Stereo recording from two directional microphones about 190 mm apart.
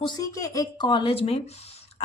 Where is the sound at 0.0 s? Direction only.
20° left (ahead or behind).